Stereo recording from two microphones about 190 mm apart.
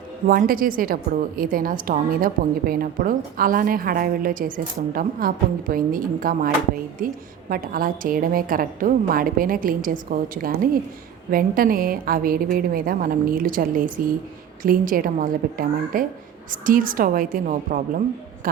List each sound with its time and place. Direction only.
0.3 s a woman's voice: 45° right (ahead or behind)